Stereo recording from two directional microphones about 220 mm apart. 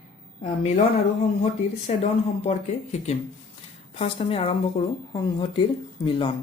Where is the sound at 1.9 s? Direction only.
30° left (ahead or behind).